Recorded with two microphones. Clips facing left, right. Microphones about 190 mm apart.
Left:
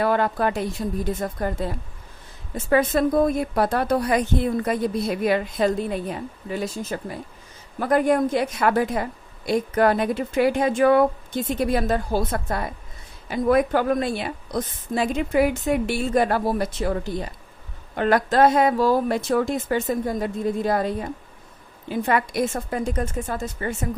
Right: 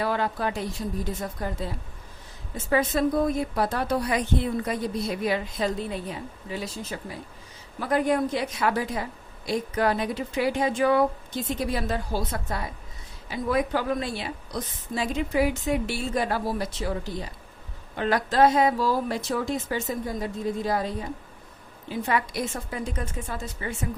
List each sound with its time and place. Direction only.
0.0 s a woman's voice: 55° left (ahead or behind)